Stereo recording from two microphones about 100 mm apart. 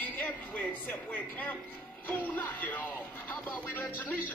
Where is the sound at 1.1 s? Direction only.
20° left (ahead or behind).